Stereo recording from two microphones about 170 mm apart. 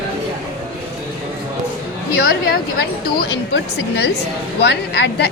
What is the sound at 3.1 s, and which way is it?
Speech, 75° left (ahead or behind).